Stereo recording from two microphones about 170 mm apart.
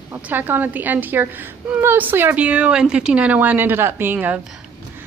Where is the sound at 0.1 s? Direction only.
10° right (ahead or behind).